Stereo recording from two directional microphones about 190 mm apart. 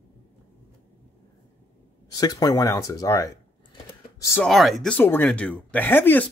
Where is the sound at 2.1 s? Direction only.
20° left (ahead or behind).